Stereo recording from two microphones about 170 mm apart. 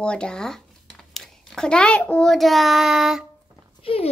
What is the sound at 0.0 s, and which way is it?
A child's voice, 5° left (ahead or behind).